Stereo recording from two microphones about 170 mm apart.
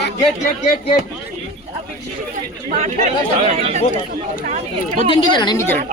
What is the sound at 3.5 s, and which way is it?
Speech, 40° right (ahead or behind).